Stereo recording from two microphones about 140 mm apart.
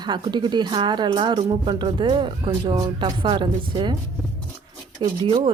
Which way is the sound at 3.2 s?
35° right (ahead or behind).